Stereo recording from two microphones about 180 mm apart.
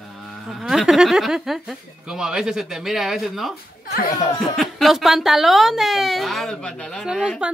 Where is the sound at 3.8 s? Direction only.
55° left (ahead or behind).